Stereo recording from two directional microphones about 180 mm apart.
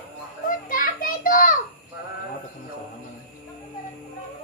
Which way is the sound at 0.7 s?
50° left (ahead or behind).